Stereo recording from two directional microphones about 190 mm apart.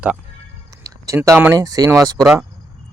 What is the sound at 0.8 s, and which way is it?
Speech, 15° right (ahead or behind).